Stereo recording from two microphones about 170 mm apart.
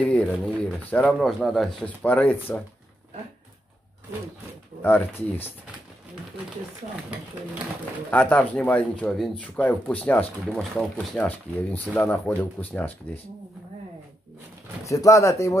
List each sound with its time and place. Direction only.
0.0 s speech: 5° left (ahead or behind)
4.8 s speech: 10° left (ahead or behind)
8.1 s speech: 5° left (ahead or behind)
14.9 s speech: 20° left (ahead or behind)